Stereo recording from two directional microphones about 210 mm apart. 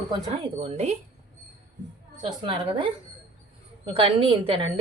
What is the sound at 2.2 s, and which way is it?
Speech, 25° right (ahead or behind).